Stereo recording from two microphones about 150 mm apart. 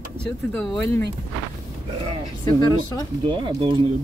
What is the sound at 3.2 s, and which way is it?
Speech, 30° right (ahead or behind).